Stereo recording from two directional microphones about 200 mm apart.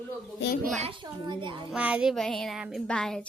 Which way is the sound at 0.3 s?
60° left (ahead or behind).